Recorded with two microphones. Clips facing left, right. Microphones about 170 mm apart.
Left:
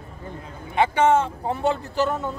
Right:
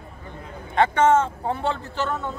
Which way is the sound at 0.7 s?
5° left (ahead or behind).